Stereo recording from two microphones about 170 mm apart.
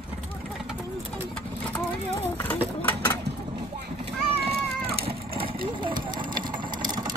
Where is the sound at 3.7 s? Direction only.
75° right (ahead or behind).